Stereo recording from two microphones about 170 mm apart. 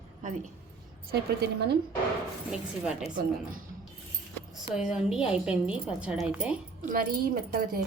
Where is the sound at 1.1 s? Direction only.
70° right (ahead or behind).